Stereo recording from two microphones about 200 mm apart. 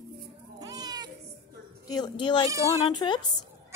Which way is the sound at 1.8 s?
20° left (ahead or behind).